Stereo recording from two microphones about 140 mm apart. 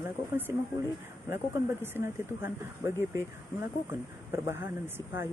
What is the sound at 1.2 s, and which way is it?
Speech, 15° right (ahead or behind).